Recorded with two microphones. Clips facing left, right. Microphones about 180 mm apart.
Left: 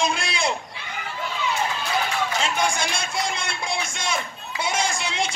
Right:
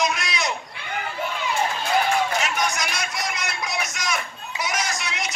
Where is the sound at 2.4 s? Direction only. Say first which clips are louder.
Left 1 dB; 30° left (ahead or behind).